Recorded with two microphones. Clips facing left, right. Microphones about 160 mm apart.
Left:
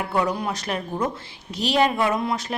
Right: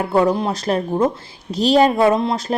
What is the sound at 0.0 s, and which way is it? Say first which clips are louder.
A woman's voice: right 7 dB; 30° right (ahead or behind).